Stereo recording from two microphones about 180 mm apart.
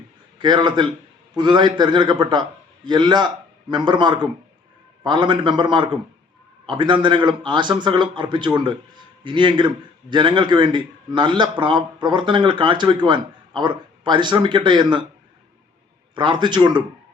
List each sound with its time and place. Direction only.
0.3 s a man's voice: 25° right (ahead or behind)
16.1 s a man's voice: 25° right (ahead or behind)